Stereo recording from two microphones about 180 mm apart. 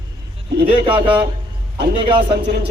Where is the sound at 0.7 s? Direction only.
30° right (ahead or behind).